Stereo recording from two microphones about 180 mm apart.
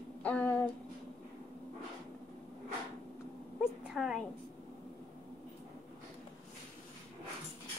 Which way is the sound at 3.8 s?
5° right (ahead or behind).